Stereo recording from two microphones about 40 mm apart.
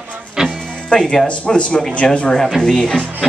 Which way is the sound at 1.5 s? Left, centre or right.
Left.